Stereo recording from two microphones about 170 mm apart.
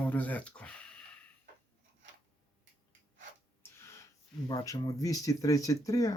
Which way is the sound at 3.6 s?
15° left (ahead or behind).